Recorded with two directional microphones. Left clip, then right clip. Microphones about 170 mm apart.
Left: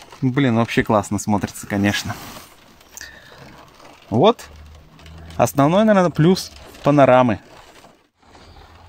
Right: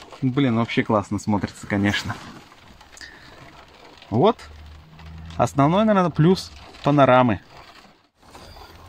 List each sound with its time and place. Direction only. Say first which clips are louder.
0.3 s speech: left 3 dB; 30° left (ahead or behind); by 2.1 s 15° left (ahead or behind)
4.1 s speech: left 4 dB; 15° left (ahead or behind)
5.4 s speech: left 3 dB; 20° left (ahead or behind)